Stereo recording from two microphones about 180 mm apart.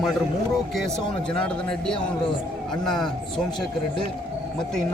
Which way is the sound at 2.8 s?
Centre (ahead or behind).